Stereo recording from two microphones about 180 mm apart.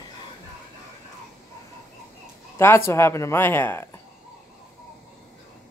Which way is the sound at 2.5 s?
15° left (ahead or behind).